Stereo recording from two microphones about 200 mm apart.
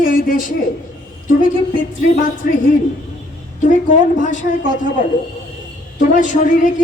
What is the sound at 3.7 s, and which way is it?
Speech, 40° left (ahead or behind).